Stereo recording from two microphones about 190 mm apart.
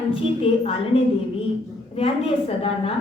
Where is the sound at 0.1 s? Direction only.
30° left (ahead or behind).